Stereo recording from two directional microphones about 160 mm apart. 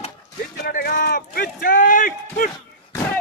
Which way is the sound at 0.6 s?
70° left (ahead or behind).